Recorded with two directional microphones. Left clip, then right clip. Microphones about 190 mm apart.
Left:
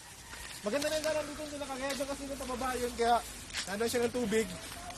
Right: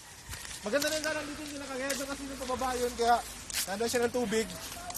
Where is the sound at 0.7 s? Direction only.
Centre (ahead or behind).